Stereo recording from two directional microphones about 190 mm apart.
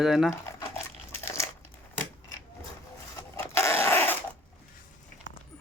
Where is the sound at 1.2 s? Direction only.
15° left (ahead or behind).